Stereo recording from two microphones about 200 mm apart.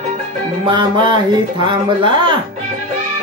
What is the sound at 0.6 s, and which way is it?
Speech, 20° right (ahead or behind).